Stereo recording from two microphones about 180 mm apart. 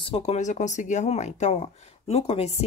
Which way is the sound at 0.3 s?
40° left (ahead or behind).